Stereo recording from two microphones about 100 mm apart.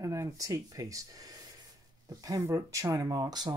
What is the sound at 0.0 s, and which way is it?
Speech, 30° right (ahead or behind).